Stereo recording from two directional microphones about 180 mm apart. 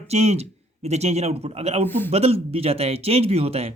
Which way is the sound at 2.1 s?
35° right (ahead or behind).